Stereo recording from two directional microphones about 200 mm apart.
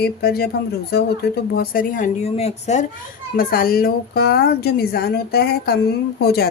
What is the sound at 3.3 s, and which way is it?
Speech, 50° left (ahead or behind).